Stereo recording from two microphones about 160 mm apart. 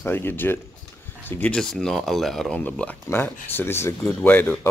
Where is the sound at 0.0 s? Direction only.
15° left (ahead or behind).